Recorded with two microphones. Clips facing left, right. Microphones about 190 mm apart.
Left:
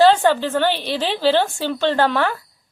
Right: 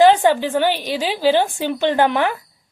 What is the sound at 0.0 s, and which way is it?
A woman's voice, 15° right (ahead or behind).